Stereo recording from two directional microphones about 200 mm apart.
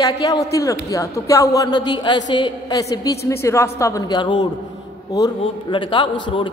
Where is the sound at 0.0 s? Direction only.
15° left (ahead or behind).